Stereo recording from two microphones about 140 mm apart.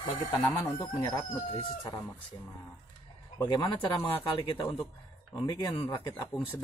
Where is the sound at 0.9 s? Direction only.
25° left (ahead or behind).